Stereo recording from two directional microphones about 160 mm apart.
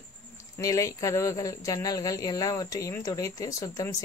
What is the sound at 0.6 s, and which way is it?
Speech, 20° left (ahead or behind).